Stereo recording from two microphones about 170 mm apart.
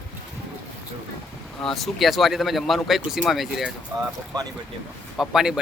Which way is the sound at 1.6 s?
Centre (ahead or behind).